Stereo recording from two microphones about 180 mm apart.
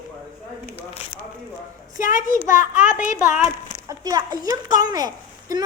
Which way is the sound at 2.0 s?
50° left (ahead or behind).